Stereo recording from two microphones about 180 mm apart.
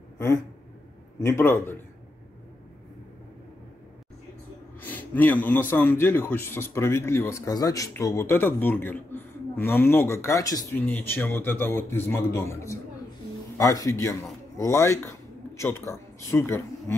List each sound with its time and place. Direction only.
1.2 s a man's voice: 15° left (ahead or behind)
4.7 s a man's voice: 10° left (ahead or behind)